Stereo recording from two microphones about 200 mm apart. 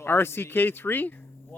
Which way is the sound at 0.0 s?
10° left (ahead or behind).